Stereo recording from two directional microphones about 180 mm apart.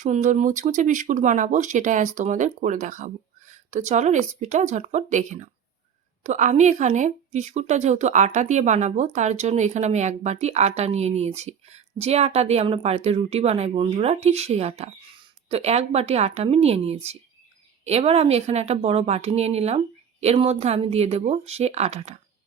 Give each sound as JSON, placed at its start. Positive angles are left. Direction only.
{"t": 0.0, "sound": "speech", "side_deg": -40}